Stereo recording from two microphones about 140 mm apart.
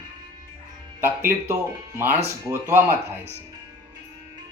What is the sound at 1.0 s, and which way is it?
Speech, 15° right (ahead or behind).